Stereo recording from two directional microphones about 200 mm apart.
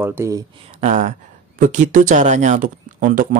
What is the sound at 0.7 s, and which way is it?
Speech, 35° right (ahead or behind).